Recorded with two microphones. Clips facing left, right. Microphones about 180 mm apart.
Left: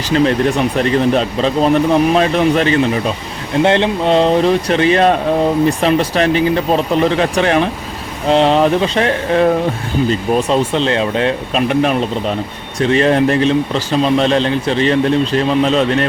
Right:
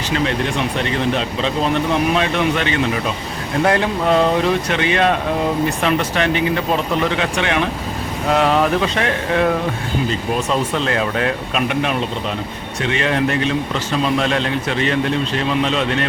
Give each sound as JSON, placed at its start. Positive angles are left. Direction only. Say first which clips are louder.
{"t": 0.1, "sound": "speech", "louder": "left 7 dB", "side_deg": 40}